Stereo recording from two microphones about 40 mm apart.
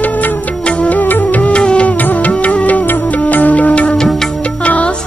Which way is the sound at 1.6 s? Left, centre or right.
Left.